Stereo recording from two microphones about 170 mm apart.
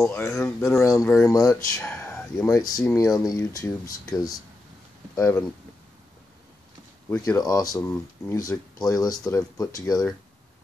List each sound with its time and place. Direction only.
0.0 s speech: 15° left (ahead or behind)
2.0 s a sound: 5° left (ahead or behind)
2.5 s speech: 20° left (ahead or behind)
5.1 s speech: 15° left (ahead or behind)
7.1 s speech: 20° left (ahead or behind)